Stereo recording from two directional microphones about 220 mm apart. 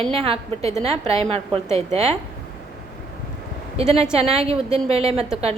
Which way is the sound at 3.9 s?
30° right (ahead or behind).